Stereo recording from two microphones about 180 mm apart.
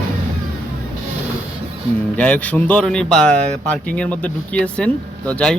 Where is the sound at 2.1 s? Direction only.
5° left (ahead or behind).